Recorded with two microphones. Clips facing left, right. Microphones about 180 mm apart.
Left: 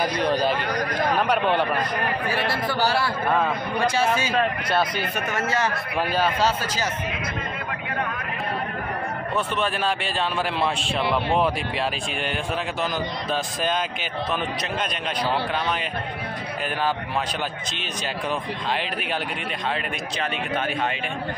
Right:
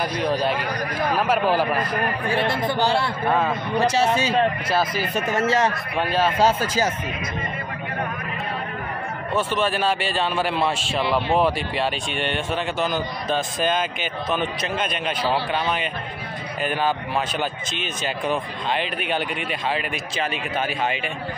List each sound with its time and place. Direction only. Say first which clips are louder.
0.0 s a man's voice: even; centre (ahead or behind)
2.5 s a man's voice: right 2 dB; 25° right (ahead or behind)
3.3 s a man's voice: right 2 dB; centre (ahead or behind)
3.8 s speech: right 2 dB; 40° right (ahead or behind)
4.6 s a man's voice: right 1 dB; centre (ahead or behind)
5.0 s speech: right 3 dB; 65° left (ahead or behind)
5.9 s a man's voice: right 1 dB; centre (ahead or behind)
6.4 s speech: right 4 dB; 50° right (ahead or behind)
9.3 s a man's voice: right 4 dB; centre (ahead or behind)
17.7 s a man's voice: right 2 dB; centre (ahead or behind)